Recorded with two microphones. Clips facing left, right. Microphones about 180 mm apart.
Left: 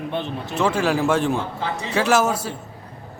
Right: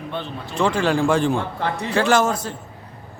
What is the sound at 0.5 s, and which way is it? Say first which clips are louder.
Speech: right 1 dB; 5° left (ahead or behind).